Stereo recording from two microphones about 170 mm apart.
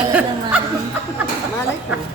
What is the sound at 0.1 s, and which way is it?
Chuckle, 10° right (ahead or behind).